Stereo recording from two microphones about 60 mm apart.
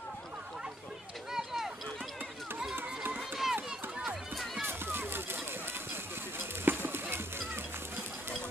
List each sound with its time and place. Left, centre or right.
1.3 s run: centre
2.7 s run: right
3.2 s run: centre
4.6 s a sound: right